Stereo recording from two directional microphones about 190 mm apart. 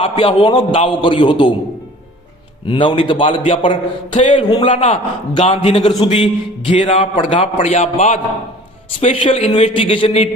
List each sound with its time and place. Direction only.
0.0 s a man's voice: 30° left (ahead or behind)
2.6 s a man's voice: 25° left (ahead or behind)
4.2 s a man's voice: 40° left (ahead or behind)
4.4 s a man's voice: 25° left (ahead or behind)
4.7 s a man's voice: 40° left (ahead or behind)